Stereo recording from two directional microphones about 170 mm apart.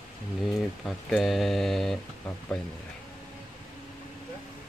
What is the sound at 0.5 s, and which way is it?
Speech, centre (ahead or behind).